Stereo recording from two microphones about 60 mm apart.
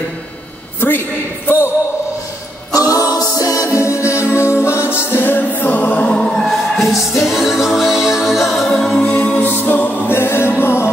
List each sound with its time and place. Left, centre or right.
0.7 s a sound: left
2.7 s a capella: left
5.6 s music: left
6.1 s music: centre
8.7 s a capella: centre
9.1 s music: left